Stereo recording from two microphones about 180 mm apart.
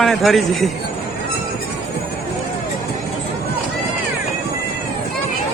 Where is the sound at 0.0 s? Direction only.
Centre (ahead or behind).